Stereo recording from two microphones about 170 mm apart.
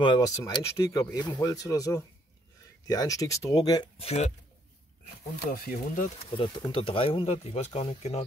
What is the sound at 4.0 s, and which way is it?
Speech, 40° left (ahead or behind).